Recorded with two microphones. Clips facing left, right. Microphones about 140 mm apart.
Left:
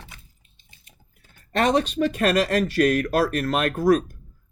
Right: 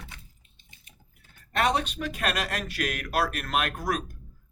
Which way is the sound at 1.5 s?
35° left (ahead or behind).